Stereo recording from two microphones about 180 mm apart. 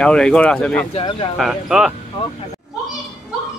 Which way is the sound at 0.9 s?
30° left (ahead or behind).